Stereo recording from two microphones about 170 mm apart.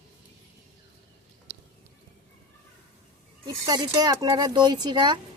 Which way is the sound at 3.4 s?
25° right (ahead or behind).